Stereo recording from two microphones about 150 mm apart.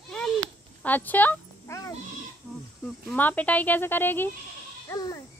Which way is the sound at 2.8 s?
10° left (ahead or behind).